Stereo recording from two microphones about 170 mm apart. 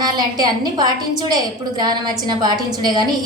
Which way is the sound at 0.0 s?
25° right (ahead or behind).